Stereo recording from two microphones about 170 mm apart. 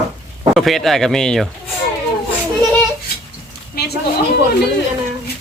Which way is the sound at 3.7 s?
70° left (ahead or behind).